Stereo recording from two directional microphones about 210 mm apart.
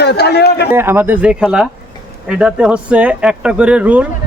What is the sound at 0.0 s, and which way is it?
Speech, 50° left (ahead or behind).